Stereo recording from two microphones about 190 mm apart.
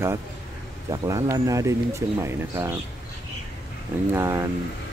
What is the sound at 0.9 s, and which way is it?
Speech, 15° right (ahead or behind).